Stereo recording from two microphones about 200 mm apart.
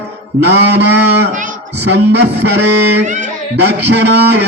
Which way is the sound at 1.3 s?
40° right (ahead or behind).